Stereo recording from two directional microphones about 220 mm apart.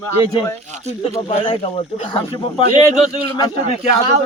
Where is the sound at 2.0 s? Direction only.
25° left (ahead or behind).